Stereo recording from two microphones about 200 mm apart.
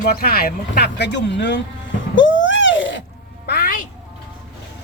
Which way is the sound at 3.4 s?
50° left (ahead or behind).